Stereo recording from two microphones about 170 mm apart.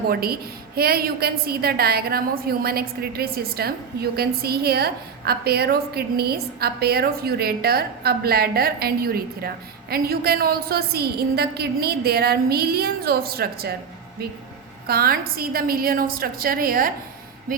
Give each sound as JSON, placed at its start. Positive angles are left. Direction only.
{"t": 0.1, "sound": "a woman's voice", "side_deg": -65}
{"t": 14.8, "sound": "a woman's voice", "side_deg": -60}